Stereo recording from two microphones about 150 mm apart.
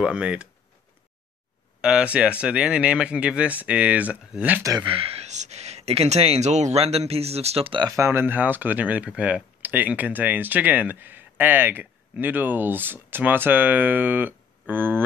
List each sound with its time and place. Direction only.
0.0 s speech: 5° right (ahead or behind)
1.8 s speech: 5° right (ahead or behind)
4.6 s speech: 30° right (ahead or behind)
7.9 s speech: 15° right (ahead or behind)